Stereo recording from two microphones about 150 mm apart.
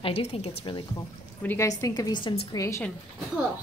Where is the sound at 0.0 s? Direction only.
40° left (ahead or behind).